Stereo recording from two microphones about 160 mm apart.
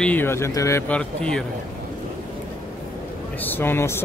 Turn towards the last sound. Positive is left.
turn(degrees=15)  # may be behind; listen again after turning